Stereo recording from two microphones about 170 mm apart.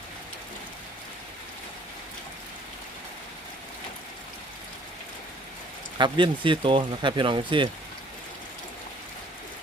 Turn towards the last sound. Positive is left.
turn(degrees=-30)  # may be behind; listen again after turning